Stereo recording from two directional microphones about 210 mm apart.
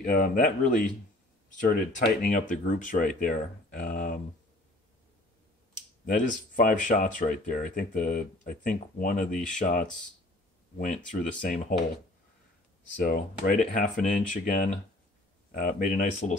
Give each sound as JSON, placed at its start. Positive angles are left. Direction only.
{"t": 0.0, "sound": "speech", "side_deg": 40}
{"t": 6.0, "sound": "speech", "side_deg": 40}
{"t": 10.9, "sound": "speech", "side_deg": 40}
{"t": 13.0, "sound": "speech", "side_deg": 40}